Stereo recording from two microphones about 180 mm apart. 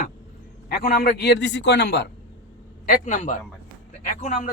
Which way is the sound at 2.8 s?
50° left (ahead or behind).